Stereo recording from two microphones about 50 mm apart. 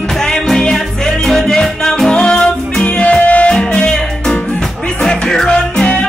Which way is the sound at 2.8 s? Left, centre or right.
Left.